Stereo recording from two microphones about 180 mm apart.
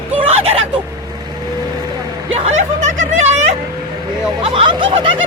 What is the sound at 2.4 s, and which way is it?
Snicker, 40° right (ahead or behind).